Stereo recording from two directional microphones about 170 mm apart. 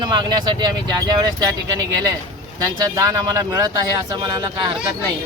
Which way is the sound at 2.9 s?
20° right (ahead or behind).